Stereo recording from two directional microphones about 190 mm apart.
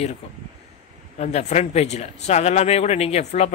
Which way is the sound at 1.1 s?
35° left (ahead or behind).